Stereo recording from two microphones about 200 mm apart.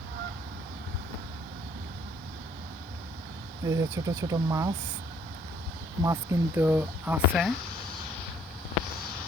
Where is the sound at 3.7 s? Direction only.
15° right (ahead or behind).